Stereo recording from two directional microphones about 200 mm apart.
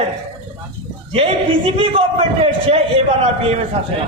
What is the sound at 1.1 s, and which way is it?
A man's voice, 30° right (ahead or behind).